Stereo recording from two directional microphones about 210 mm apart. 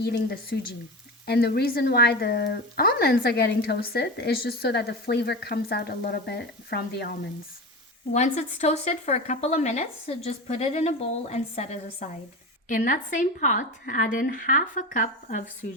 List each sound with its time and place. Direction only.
0.0 s speech: 50° left (ahead or behind)
8.1 s a woman's voice: 35° left (ahead or behind)